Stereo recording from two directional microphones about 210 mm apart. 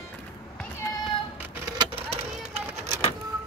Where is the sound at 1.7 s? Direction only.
25° right (ahead or behind).